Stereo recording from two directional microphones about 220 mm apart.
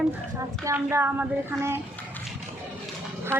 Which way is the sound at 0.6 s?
10° right (ahead or behind).